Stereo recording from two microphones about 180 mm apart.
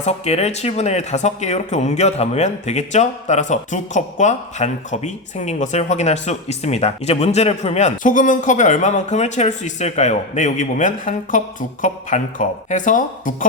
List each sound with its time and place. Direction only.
0.0 s speech: 35° left (ahead or behind)